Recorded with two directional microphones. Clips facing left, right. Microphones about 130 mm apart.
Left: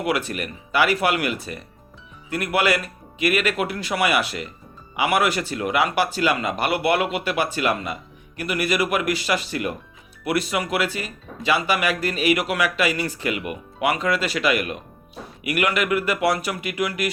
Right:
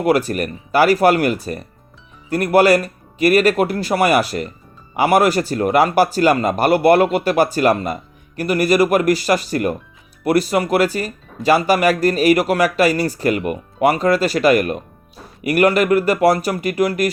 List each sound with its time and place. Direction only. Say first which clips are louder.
0.0 s speech: right 8 dB; 40° right (ahead or behind)